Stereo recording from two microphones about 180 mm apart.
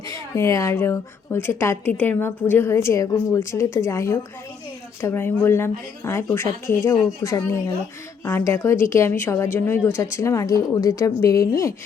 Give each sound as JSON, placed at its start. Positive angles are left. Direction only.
{"t": 0.1, "sound": "a woman's voice", "side_deg": 15}